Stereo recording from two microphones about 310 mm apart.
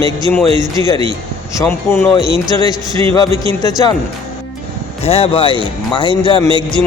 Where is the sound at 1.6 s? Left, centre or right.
Centre.